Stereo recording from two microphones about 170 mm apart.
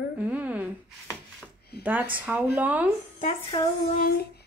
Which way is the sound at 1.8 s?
10° right (ahead or behind).